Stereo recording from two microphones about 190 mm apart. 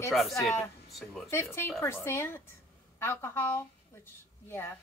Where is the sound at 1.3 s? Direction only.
10° left (ahead or behind).